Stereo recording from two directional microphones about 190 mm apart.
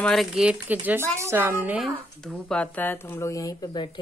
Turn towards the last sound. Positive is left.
turn(degrees=25)  # may be behind; listen again after turning